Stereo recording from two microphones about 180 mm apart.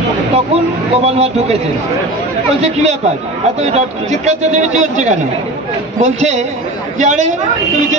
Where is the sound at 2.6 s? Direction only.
40° right (ahead or behind).